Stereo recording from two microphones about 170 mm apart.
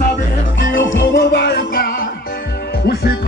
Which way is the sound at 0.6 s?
75° left (ahead or behind).